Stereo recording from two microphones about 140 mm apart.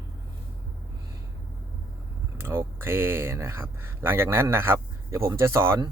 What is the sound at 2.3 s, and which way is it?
Speech, 15° right (ahead or behind).